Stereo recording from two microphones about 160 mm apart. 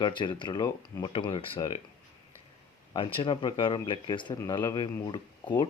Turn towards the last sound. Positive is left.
turn(degrees=30)  # may be behind; listen again after turning